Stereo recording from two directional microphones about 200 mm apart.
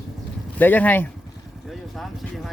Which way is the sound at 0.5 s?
10° left (ahead or behind).